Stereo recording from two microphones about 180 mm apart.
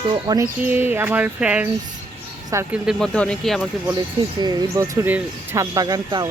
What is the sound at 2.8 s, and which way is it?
Speech, 5° left (ahead or behind).